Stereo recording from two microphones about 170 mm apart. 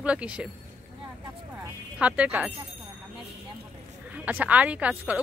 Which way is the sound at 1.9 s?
5° right (ahead or behind).